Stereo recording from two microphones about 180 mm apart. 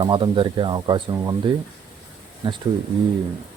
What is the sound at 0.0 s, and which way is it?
Speech, 30° right (ahead or behind).